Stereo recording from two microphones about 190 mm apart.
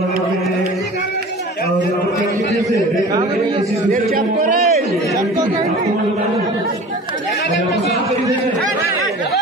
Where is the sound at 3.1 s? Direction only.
20° right (ahead or behind).